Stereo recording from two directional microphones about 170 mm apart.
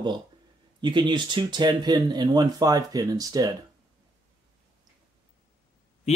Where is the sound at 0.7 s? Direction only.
25° right (ahead or behind).